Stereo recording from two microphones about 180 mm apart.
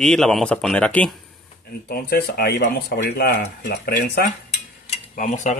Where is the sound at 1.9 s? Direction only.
60° left (ahead or behind).